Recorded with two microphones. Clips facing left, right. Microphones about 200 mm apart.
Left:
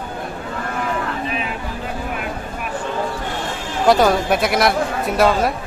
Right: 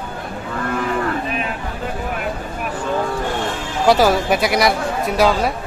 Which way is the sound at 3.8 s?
Centre (ahead or behind).